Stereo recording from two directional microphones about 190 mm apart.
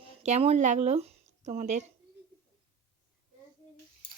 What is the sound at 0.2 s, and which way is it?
Speech, 35° right (ahead or behind).